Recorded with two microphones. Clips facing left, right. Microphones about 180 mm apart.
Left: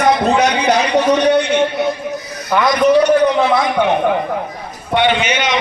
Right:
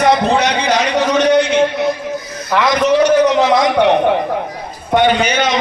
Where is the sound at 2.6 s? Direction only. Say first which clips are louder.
Left 1 dB; 90° right.